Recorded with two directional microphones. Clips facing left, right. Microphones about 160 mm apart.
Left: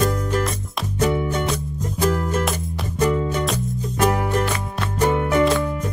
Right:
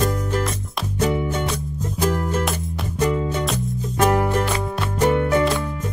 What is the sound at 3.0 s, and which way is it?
Music, 15° right (ahead or behind).